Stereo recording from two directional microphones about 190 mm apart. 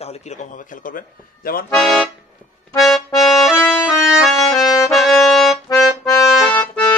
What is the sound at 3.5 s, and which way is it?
Music, 10° left (ahead or behind).